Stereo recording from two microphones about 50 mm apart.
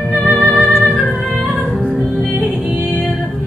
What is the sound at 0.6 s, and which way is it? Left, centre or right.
Music, centre.